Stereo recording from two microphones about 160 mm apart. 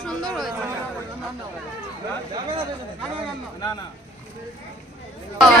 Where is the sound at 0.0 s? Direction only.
Centre (ahead or behind).